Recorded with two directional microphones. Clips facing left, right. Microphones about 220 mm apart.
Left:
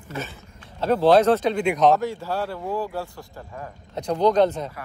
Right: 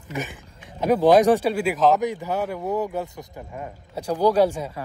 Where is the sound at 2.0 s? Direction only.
15° right (ahead or behind).